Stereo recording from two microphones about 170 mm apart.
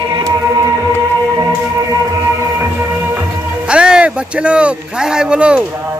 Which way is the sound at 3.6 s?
5° right (ahead or behind).